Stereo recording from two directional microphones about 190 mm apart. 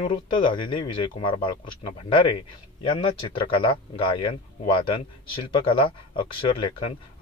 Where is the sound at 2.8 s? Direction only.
25° left (ahead or behind).